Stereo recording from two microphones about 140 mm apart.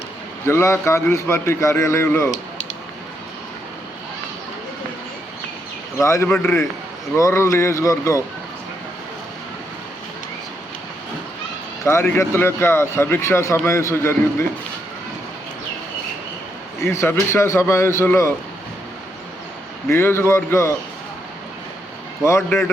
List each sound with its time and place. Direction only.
0.4 s a man's voice: 20° left (ahead or behind)
6.0 s a man's voice: 20° left (ahead or behind)
11.9 s a man's voice: 20° left (ahead or behind)
16.8 s a man's voice: 20° left (ahead or behind)
19.9 s a man's voice: 20° left (ahead or behind)
22.2 s a man's voice: 20° left (ahead or behind)